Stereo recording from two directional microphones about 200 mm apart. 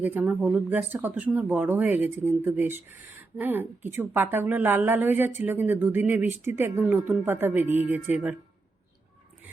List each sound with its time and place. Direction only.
0.0 s speech: 10° right (ahead or behind)